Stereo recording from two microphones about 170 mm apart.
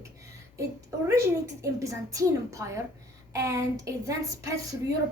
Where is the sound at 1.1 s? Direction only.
15° right (ahead or behind).